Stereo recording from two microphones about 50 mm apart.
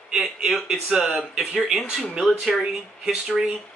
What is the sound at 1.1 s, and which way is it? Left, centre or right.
Speech, centre.